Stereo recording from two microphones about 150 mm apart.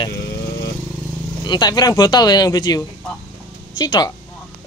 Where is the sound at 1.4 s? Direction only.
30° left (ahead or behind).